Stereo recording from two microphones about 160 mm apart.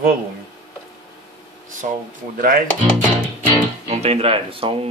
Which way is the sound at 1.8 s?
55° right (ahead or behind).